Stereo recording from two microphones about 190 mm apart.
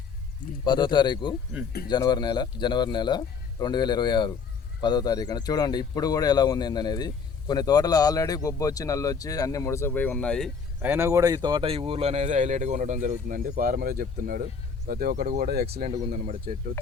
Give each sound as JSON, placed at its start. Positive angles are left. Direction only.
{"t": 0.6, "sound": "speech", "side_deg": 25}
{"t": 10.8, "sound": "speech", "side_deg": -10}